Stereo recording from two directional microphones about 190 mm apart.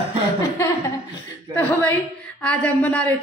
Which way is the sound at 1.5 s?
10° left (ahead or behind).